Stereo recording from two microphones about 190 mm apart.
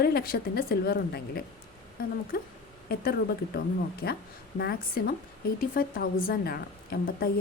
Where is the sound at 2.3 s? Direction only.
55° left (ahead or behind).